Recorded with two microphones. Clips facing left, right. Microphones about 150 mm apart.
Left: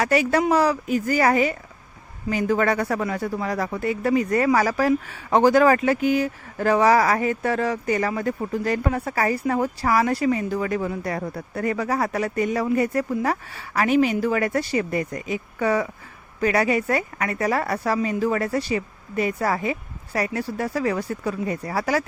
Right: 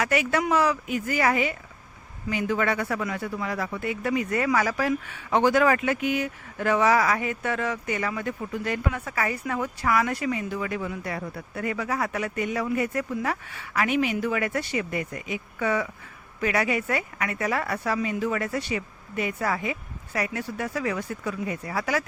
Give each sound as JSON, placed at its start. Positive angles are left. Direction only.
{"t": 0.0, "sound": "speech", "side_deg": 35}